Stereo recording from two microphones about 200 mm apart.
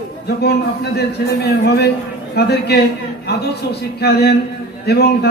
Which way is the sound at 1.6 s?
55° left (ahead or behind).